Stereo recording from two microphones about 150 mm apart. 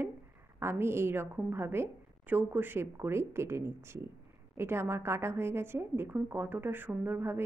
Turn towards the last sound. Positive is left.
turn(degrees=-15)  # may be behind; listen again after turning